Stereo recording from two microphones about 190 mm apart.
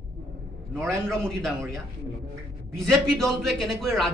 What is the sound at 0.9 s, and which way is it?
Speech, 5° left (ahead or behind).